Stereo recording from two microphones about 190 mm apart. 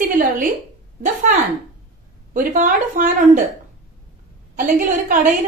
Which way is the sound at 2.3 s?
45° right (ahead or behind).